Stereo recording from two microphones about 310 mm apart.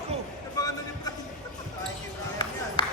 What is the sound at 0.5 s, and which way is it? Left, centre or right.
Music, centre.